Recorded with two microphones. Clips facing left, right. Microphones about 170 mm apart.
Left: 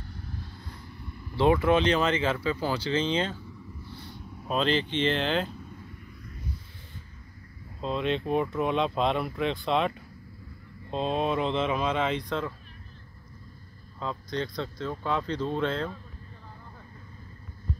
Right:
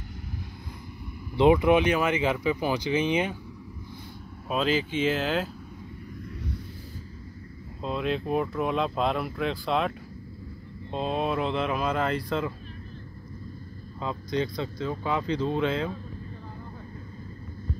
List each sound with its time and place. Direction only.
1.3 s speech: 15° right (ahead or behind)
4.5 s speech: 5° right (ahead or behind)
7.8 s speech: centre (ahead or behind)
13.9 s speech: 5° right (ahead or behind)